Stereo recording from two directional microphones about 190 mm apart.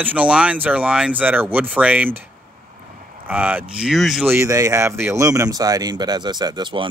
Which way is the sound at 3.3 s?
10° right (ahead or behind).